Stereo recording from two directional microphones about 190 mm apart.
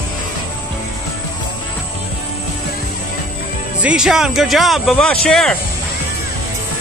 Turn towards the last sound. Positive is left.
turn(degrees=0)  # may be behind; listen again after turning